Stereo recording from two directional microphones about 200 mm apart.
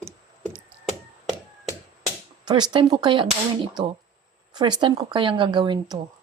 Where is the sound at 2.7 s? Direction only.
20° right (ahead or behind).